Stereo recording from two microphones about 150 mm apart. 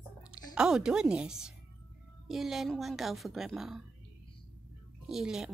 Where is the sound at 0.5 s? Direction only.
5° right (ahead or behind).